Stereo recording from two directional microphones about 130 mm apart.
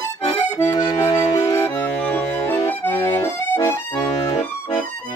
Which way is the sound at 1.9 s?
10° left (ahead or behind).